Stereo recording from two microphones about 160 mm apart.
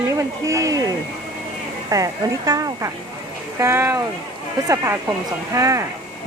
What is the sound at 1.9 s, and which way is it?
Speech, 20° right (ahead or behind).